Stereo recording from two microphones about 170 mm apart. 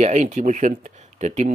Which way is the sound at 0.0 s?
45° right (ahead or behind).